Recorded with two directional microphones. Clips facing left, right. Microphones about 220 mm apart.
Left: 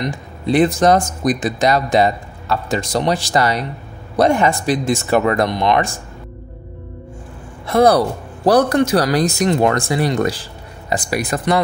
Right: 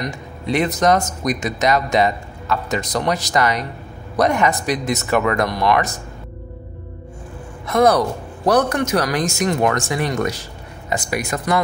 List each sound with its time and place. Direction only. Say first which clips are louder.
0.5 s a man's voice: left 4 dB; 30° left (ahead or behind)
7.6 s a man's voice: left 2 dB; 35° left (ahead or behind)